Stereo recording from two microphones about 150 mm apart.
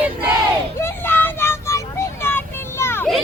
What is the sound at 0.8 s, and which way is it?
Child singing, 15° left (ahead or behind).